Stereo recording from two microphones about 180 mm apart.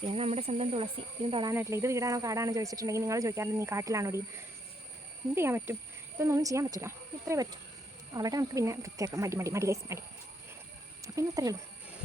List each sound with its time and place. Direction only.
0.1 s speech: 35° right (ahead or behind)
1.5 s speech: 15° right (ahead or behind)
5.3 s speech: 15° right (ahead or behind)
11.0 s speech: 15° right (ahead or behind)